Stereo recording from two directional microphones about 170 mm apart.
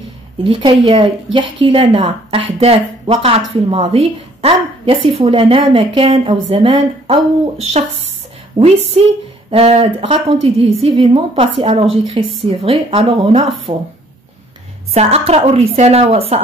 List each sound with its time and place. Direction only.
0.4 s a woman's voice: 30° right (ahead or behind)
15.0 s a woman's voice: 40° right (ahead or behind)